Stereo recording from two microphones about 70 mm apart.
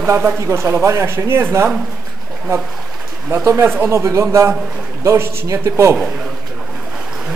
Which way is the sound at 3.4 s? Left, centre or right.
Right.